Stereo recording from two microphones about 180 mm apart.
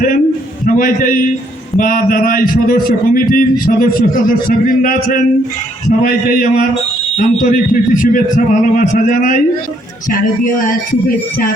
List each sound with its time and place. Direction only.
0.6 s a man's voice: 50° left (ahead or behind)
10.4 s a man's voice: 50° left (ahead or behind)